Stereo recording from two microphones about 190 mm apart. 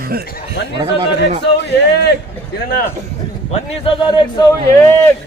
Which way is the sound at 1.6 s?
60° left (ahead or behind).